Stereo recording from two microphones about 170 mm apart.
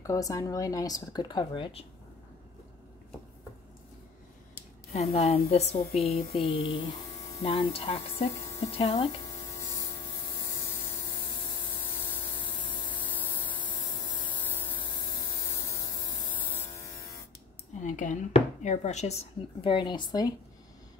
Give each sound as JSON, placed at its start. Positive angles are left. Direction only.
{"t": 0.0, "sound": "speech", "side_deg": 20}
{"t": 4.9, "sound": "speech", "side_deg": 40}
{"t": 12.0, "sound": "mains hum", "side_deg": 30}
{"t": 16.3, "sound": "electric shaver", "side_deg": 30}
{"t": 17.8, "sound": "speech", "side_deg": 45}